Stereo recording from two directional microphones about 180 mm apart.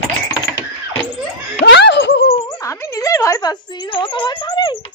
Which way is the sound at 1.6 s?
80° left.